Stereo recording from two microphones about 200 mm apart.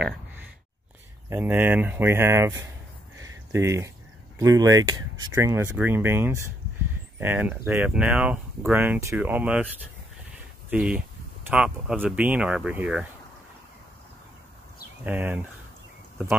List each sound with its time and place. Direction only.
1.3 s speech: 10° right (ahead or behind)
3.2 s a sound: 15° right (ahead or behind)
4.4 s speech: 15° right (ahead or behind)
10.7 s speech: 5° right (ahead or behind)
15.0 s speech: 10° right (ahead or behind)